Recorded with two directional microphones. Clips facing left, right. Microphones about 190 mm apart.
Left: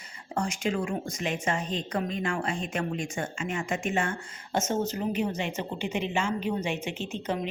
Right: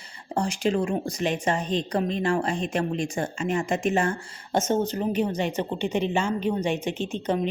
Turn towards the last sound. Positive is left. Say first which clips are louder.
# right 5 dB
turn(degrees=-35)  # may be behind; listen again after turning